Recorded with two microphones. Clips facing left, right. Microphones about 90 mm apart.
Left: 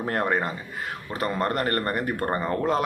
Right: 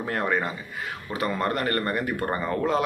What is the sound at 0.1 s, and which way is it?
Speech, 40° left (ahead or behind).